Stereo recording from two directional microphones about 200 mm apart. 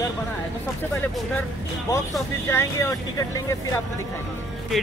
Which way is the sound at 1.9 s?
15° left (ahead or behind).